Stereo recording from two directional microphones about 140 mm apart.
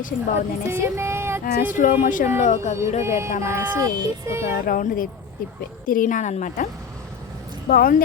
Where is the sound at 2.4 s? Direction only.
55° left (ahead or behind).